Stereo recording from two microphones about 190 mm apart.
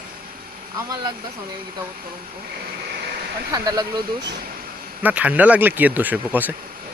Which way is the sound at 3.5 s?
20° right (ahead or behind).